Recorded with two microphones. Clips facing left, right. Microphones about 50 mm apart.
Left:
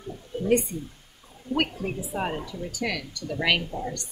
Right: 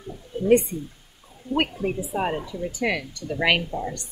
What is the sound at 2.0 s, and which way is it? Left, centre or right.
Speech, centre.